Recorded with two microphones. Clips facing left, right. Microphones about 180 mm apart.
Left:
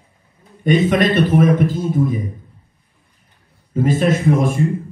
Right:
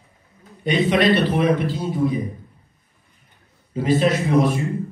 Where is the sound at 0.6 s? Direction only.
45° left (ahead or behind).